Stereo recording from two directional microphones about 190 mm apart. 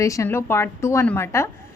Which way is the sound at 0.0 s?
15° left (ahead or behind).